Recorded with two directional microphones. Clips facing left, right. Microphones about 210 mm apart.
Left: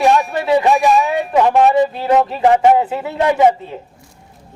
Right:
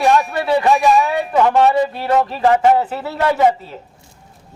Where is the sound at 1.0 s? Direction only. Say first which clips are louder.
Left 1 dB; 15° left (ahead or behind).